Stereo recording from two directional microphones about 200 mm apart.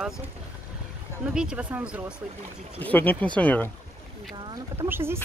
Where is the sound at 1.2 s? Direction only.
5° right (ahead or behind).